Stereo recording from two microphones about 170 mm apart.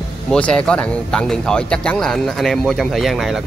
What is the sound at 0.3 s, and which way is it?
Speech, 5° left (ahead or behind).